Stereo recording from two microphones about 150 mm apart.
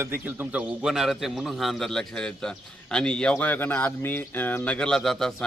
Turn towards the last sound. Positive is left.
turn(degrees=0)  # may be behind; listen again after turning